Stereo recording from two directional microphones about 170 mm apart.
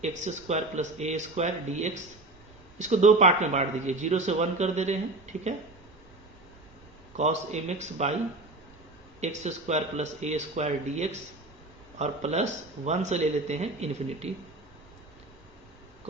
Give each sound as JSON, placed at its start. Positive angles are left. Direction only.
{"t": 0.0, "sound": "speech", "side_deg": -40}
{"t": 7.2, "sound": "speech", "side_deg": -40}
{"t": 9.2, "sound": "speech", "side_deg": -40}